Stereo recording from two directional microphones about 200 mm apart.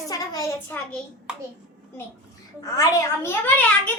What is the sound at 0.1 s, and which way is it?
Speech, 15° left (ahead or behind).